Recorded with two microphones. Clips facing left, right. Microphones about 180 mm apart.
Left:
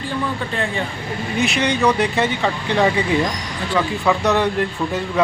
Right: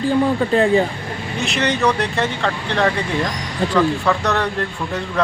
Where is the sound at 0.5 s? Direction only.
35° right (ahead or behind).